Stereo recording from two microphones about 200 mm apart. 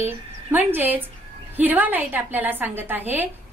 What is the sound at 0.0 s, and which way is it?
A woman's voice, 10° right (ahead or behind).